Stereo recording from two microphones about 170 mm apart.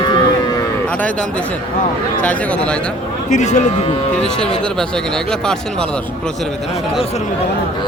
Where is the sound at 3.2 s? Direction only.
45° left (ahead or behind).